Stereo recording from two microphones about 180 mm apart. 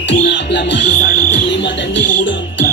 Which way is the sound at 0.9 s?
45° left (ahead or behind).